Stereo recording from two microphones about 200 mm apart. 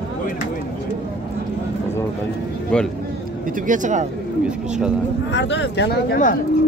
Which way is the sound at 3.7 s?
40° right (ahead or behind).